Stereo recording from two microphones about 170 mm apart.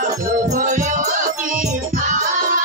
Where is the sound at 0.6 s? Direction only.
50° right (ahead or behind).